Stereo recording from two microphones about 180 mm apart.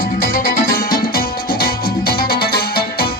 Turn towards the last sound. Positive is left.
turn(degrees=60)  # may be behind; listen again after turning